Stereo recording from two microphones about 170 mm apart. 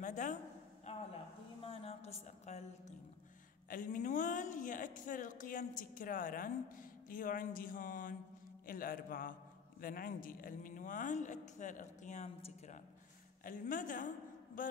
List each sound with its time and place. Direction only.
0.0 s a sound: 45° left (ahead or behind)
1.6 s a woman's voice: 35° left (ahead or behind)
3.6 s a man's voice: 55° left (ahead or behind); by 12.8 s 40° left (ahead or behind)
13.4 s a woman's voice: 55° left (ahead or behind)